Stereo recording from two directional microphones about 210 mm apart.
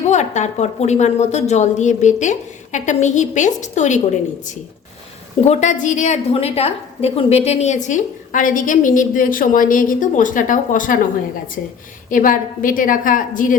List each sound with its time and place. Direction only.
0.1 s a woman's voice: 35° left (ahead or behind)
5.5 s a woman's voice: 35° left (ahead or behind)
12.1 s a woman's voice: 40° left (ahead or behind)